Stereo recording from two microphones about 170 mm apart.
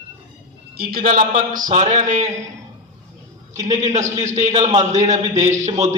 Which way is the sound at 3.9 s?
45° right (ahead or behind).